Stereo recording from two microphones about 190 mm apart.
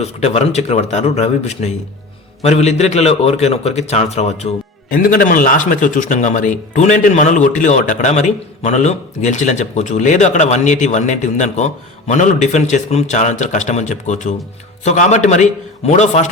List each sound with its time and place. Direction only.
0.0 s a man's voice: 35° left (ahead or behind)
4.9 s a man's voice: 50° left (ahead or behind)